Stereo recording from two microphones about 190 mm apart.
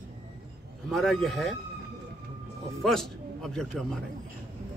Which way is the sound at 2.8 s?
Centre (ahead or behind).